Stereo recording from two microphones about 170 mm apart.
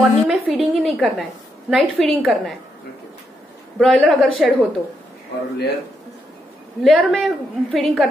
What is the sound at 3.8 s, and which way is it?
Speech, centre (ahead or behind).